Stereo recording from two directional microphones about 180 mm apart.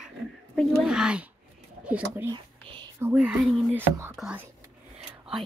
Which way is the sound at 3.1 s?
5° right (ahead or behind).